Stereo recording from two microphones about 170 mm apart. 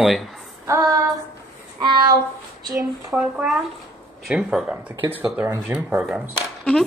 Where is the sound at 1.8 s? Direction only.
25° right (ahead or behind).